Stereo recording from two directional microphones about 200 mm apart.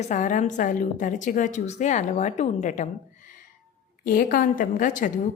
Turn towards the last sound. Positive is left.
turn(degrees=40)  # may be behind; listen again after turning